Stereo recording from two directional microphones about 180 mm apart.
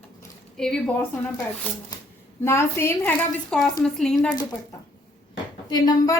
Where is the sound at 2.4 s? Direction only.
15° left (ahead or behind).